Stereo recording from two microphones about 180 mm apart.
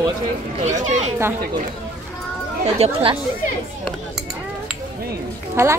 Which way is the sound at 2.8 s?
35° right (ahead or behind).